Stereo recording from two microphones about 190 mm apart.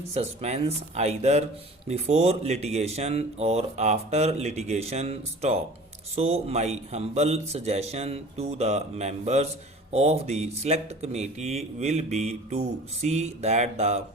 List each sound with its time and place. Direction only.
0.1 s speech: 35° right (ahead or behind)